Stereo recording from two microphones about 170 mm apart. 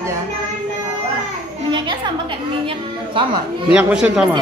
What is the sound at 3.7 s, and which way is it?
Speech, 5° right (ahead or behind).